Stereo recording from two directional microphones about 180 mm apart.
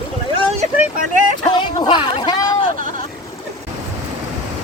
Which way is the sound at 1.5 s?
25° left (ahead or behind).